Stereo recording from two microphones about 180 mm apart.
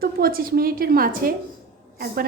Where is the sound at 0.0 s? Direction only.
55° right (ahead or behind).